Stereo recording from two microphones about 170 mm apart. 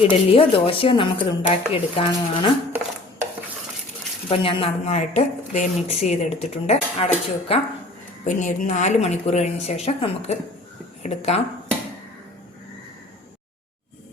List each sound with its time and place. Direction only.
0.1 s a woman's voice: 30° left (ahead or behind)
4.3 s a woman's voice: 30° left (ahead or behind)
8.2 s a woman's voice: 50° left (ahead or behind)